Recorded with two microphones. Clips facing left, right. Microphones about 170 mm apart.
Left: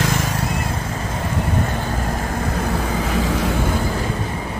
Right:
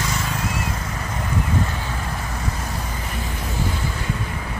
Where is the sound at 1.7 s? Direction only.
45° left (ahead or behind); by 3.8 s 85° left.